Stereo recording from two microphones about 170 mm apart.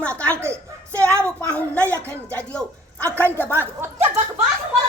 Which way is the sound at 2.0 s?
15° right (ahead or behind).